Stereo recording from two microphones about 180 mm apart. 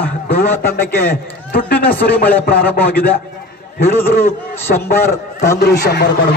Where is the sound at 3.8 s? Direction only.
15° left (ahead or behind).